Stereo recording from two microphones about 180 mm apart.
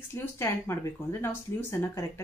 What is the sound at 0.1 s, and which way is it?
Speech, 15° left (ahead or behind).